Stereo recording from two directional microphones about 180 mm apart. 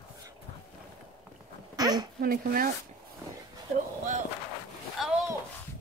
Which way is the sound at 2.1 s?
55° right (ahead or behind).